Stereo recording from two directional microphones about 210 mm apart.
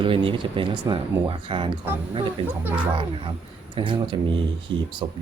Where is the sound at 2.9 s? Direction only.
25° right (ahead or behind).